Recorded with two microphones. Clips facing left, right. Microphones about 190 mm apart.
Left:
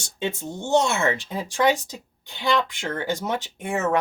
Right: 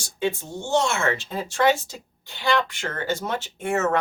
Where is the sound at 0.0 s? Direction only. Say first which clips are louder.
Right 2 dB; 25° left (ahead or behind).